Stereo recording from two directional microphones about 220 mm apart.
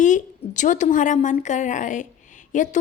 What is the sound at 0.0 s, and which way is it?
A woman's voice, 35° left (ahead or behind).